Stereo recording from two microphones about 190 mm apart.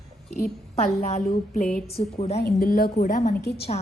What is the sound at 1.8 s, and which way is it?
Speech, 35° left (ahead or behind).